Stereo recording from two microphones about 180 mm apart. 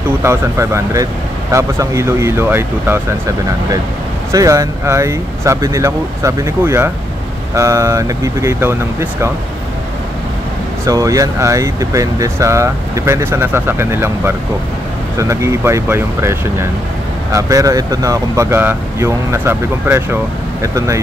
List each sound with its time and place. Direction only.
0.2 s speech: 15° right (ahead or behind)
4.3 s speech: 20° right (ahead or behind)
10.9 s speech: 20° right (ahead or behind)